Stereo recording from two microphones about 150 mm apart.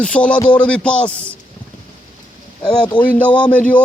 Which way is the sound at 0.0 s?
10° left (ahead or behind).